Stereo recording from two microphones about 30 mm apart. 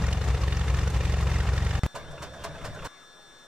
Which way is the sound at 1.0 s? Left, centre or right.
Right.